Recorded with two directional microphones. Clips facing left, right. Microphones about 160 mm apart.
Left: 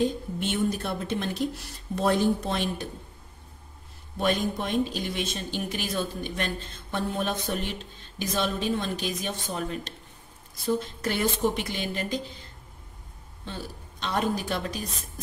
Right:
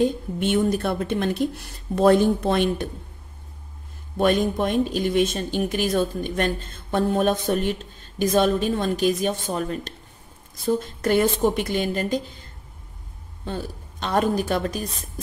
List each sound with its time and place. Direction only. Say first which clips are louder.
0.4 s a woman's voice: right 7 dB; 60° right (ahead or behind)
4.2 s speech: right 6 dB; 55° right (ahead or behind)
13.5 s speech: right 7 dB; 50° right (ahead or behind)